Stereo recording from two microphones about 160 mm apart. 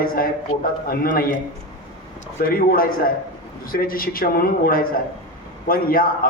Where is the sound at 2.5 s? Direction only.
65° left (ahead or behind).